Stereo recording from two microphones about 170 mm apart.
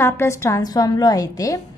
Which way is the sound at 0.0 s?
15° left (ahead or behind).